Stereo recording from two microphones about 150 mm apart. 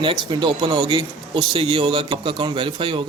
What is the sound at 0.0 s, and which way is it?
Speech, 35° right (ahead or behind).